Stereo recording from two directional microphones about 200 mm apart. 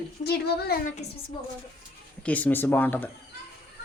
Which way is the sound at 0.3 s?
50° left (ahead or behind).